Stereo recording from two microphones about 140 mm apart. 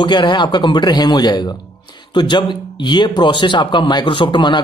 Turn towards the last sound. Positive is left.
turn(degrees=35)  # may be behind; listen again after turning